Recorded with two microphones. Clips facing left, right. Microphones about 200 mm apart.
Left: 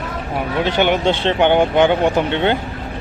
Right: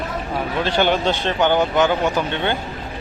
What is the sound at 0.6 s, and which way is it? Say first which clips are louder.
Speech: left 2 dB; 15° left (ahead or behind).